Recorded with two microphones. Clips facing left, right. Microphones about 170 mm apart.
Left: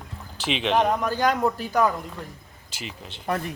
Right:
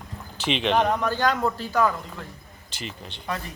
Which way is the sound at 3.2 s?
55° left (ahead or behind).